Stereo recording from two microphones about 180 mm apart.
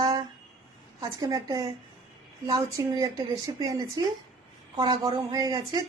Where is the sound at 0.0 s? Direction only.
20° right (ahead or behind).